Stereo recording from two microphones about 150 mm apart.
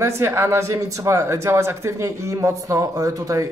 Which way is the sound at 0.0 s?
15° right (ahead or behind).